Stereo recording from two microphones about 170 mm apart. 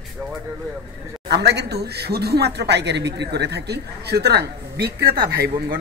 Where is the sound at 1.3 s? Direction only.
80° right.